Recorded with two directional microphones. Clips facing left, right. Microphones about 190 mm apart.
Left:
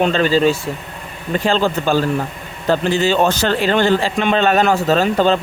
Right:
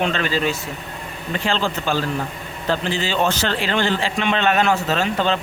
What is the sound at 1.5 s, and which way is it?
A man's voice, 45° left (ahead or behind).